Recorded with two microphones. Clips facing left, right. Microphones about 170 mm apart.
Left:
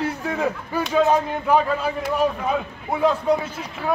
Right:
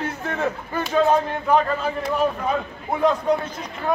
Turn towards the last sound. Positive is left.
turn(degrees=5)  # may be behind; listen again after turning